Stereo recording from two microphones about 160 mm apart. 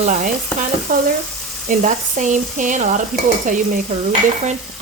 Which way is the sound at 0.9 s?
60° right (ahead or behind).